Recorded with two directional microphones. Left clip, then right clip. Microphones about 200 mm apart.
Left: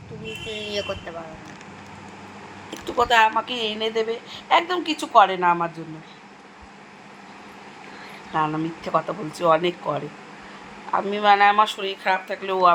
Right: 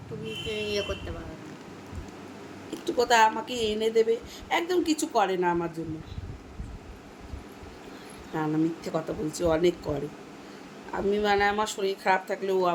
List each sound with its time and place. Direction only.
0.6 s speech: 20° right (ahead or behind)
2.8 s a woman's voice: 10° right (ahead or behind)
8.3 s a woman's voice: 10° right (ahead or behind)
10.9 s a woman's voice: 15° right (ahead or behind)